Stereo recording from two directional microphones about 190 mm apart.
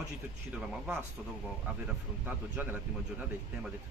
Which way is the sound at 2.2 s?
10° right (ahead or behind).